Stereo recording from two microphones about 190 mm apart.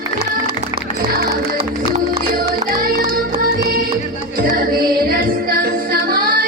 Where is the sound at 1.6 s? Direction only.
30° right (ahead or behind).